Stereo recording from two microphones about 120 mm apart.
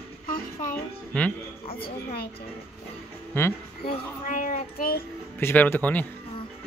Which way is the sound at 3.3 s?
20° left (ahead or behind).